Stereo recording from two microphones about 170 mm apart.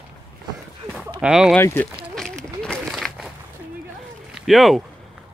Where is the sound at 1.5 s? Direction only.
10° left (ahead or behind).